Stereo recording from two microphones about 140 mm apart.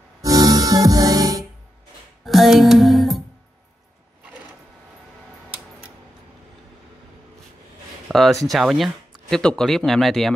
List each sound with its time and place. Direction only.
0.2 s music: 25° right (ahead or behind)
2.2 s music: centre (ahead or behind)
8.1 s speech: centre (ahead or behind)